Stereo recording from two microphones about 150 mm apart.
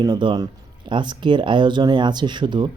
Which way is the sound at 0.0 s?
30° right (ahead or behind).